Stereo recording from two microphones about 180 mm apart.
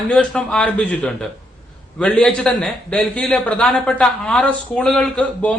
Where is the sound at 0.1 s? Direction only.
5° left (ahead or behind).